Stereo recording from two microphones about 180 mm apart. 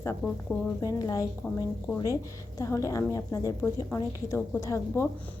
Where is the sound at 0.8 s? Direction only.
20° left (ahead or behind).